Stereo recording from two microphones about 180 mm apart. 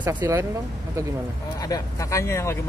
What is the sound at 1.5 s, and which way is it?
Speech, 20° left (ahead or behind).